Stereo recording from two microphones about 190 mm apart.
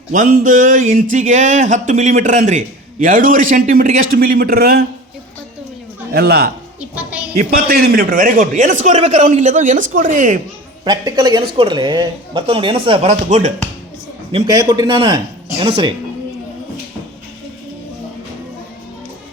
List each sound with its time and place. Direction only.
0.1 s music: 45° right (ahead or behind)
1.1 s a man's voice: 40° right (ahead or behind)
4.1 s music: 50° right (ahead or behind)
6.1 s a man's voice: 55° right (ahead or behind)
7.5 s a man's voice: 50° right (ahead or behind)
10.8 s speech: 20° right (ahead or behind)
14.3 s speech: 20° right (ahead or behind)